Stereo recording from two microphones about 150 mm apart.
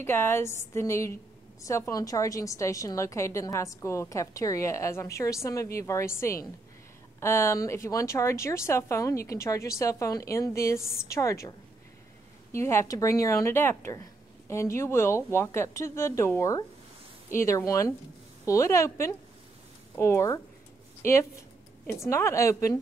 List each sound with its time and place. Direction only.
0.0 s a woman's voice: 15° left (ahead or behind)
12.5 s a woman's voice: 15° left (ahead or behind)
21.0 s a sound: 20° left (ahead or behind)
22.1 s a woman's voice: 20° left (ahead or behind)